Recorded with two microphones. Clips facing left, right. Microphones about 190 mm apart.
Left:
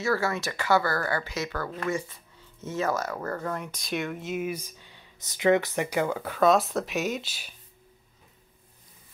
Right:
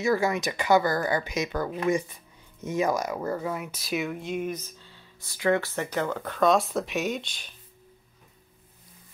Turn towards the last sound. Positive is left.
turn(degrees=5)  # may be behind; listen again after turning